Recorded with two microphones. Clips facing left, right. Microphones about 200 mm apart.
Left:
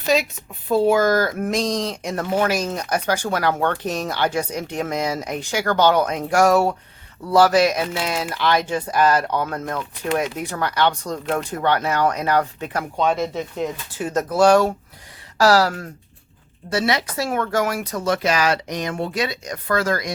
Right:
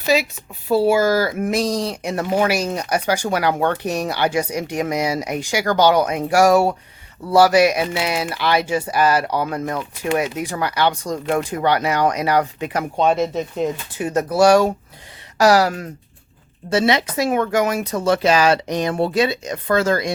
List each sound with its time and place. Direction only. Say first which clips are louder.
0.0 s speech: right 1 dB; 5° right (ahead or behind)
13.0 s speech: right 3 dB; 25° right (ahead or behind)
14.0 s speech: right 2 dB; 10° right (ahead or behind); by 20.1 s 25° right (ahead or behind)